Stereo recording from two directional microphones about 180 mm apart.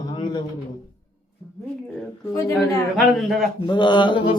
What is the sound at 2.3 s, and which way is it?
Mantra, 15° left (ahead or behind).